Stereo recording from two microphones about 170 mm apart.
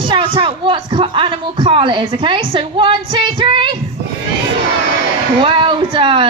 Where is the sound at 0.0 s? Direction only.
30° right (ahead or behind).